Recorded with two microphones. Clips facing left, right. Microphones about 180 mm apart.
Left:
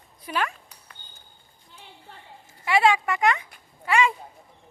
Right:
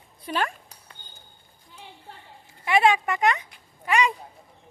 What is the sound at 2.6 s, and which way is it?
Speech, 20° right (ahead or behind).